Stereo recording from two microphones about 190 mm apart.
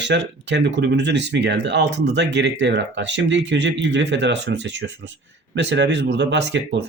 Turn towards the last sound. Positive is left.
turn(degrees=-65)  # may be behind; listen again after turning